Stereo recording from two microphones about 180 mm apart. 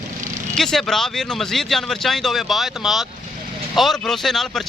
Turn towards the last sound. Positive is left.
turn(degrees=0)  # may be behind; listen again after turning